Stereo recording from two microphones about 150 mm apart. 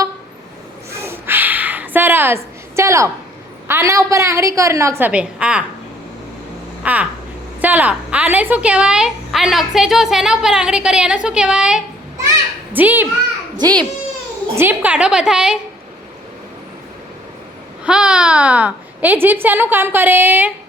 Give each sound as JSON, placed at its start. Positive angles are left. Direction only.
{"t": 0.9, "sound": "a sound", "side_deg": -20}
{"t": 3.7, "sound": "a woman's voice", "side_deg": -20}
{"t": 6.8, "sound": "a sound", "side_deg": -10}
{"t": 7.6, "sound": "a woman's voice", "side_deg": -10}
{"t": 13.6, "sound": "a woman's voice", "side_deg": -30}
{"t": 14.6, "sound": "a child's voice", "side_deg": -10}
{"t": 17.8, "sound": "a child's voice", "side_deg": -5}